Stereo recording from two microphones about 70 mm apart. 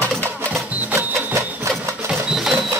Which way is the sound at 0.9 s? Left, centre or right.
Right.